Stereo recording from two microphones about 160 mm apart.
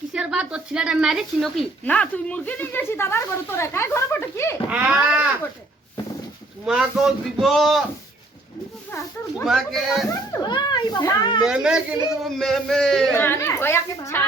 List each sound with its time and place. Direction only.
0.1 s speech: 5° right (ahead or behind); by 4.5 s 15° left (ahead or behind)
4.7 s speech: 5° right (ahead or behind)
6.7 s speech: 5° right (ahead or behind)
8.9 s speech: 15° left (ahead or behind)
9.4 s speech: centre (ahead or behind)
10.1 s a child's voice: 25° left (ahead or behind)
11.4 s speech: 5° right (ahead or behind); by 14.3 s 15° left (ahead or behind)